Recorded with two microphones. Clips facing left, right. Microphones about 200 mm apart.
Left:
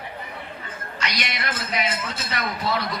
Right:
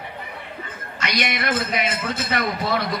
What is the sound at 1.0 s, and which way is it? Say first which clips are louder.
A man's voice: right 6 dB; 55° right (ahead or behind).